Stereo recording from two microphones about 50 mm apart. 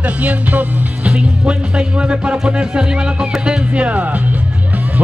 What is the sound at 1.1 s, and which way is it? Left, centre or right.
Speech, right.